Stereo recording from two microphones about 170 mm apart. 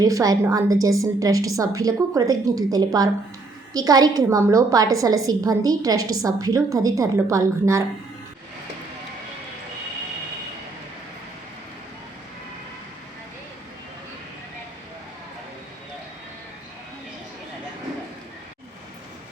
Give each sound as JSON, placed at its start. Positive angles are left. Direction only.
{"t": 0.0, "sound": "a woman's voice", "side_deg": -20}